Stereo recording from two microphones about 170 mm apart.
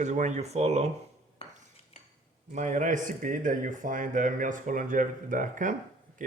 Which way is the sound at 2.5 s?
45° right (ahead or behind).